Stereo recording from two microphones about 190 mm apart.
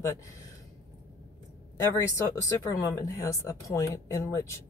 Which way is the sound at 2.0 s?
20° left (ahead or behind).